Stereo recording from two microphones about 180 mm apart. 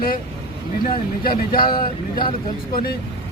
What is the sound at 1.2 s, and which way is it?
Speech, 55° left (ahead or behind).